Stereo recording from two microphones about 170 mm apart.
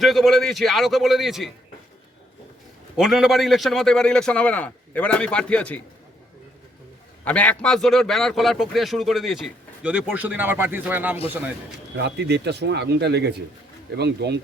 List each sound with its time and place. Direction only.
0.0 s a man's voice: centre (ahead or behind)
3.0 s a man's voice: centre (ahead or behind)
7.3 s a man's voice: 10° left (ahead or behind); by 11.2 s 10° right (ahead or behind)
11.9 s speech: 85° right